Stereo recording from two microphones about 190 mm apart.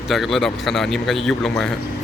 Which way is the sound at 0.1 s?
Centre (ahead or behind).